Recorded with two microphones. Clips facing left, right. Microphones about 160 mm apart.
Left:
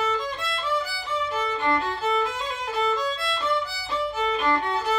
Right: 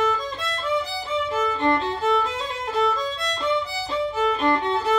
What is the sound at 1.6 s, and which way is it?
Music, 25° right (ahead or behind).